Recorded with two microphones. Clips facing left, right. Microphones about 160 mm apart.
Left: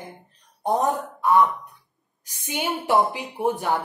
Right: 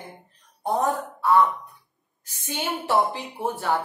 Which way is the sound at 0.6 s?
20° left (ahead or behind).